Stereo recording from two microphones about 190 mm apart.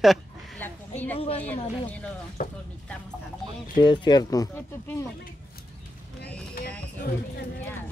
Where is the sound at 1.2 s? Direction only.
30° left (ahead or behind).